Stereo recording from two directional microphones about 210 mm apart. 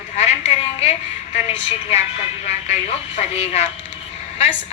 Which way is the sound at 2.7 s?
30° left (ahead or behind).